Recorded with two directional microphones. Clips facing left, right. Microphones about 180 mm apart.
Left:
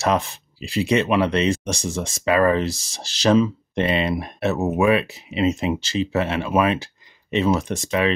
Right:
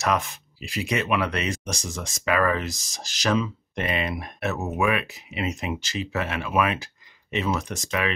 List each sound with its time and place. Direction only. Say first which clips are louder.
0.0 s speech: left 4 dB; 30° left (ahead or behind)